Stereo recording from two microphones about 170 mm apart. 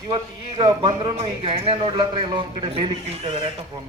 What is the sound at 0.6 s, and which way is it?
Speech, 25° right (ahead or behind).